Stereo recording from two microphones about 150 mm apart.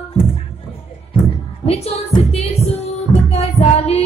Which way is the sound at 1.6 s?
45° left (ahead or behind).